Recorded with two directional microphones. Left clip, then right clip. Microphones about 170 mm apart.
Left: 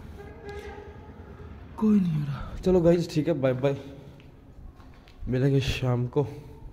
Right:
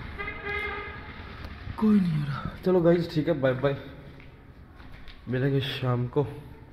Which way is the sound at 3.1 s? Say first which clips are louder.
Even; 45° left (ahead or behind).